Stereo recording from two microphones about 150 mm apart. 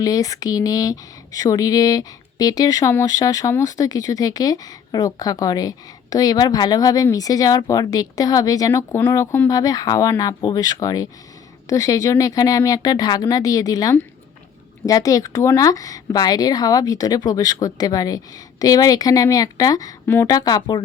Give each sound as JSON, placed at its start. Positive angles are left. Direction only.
{"t": 0.0, "sound": "speech", "side_deg": 25}